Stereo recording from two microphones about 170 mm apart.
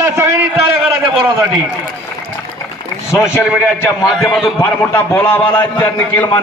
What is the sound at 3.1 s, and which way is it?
Speech, 15° left (ahead or behind).